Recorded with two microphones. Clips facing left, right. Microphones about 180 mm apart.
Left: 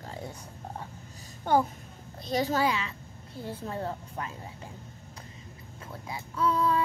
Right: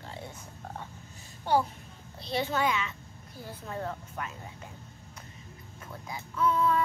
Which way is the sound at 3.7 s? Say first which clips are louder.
Right 1 dB; 30° left (ahead or behind).